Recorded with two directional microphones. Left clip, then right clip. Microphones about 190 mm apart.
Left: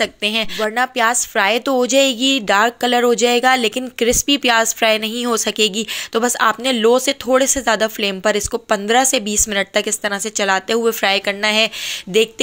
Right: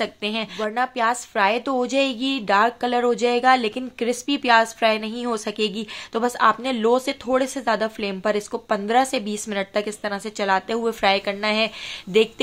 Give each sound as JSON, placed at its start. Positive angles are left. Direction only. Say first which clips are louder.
{"t": 0.0, "sound": "a woman's voice", "louder": "left 7 dB", "side_deg": 15}